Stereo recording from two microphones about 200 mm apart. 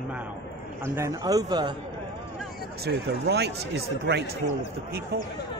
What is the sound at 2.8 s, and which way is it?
Speech, 55° right (ahead or behind).